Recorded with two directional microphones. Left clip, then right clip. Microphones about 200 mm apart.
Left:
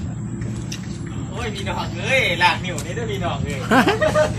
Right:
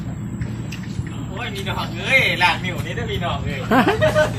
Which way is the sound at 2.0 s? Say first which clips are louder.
Right 1 dB; 25° left (ahead or behind).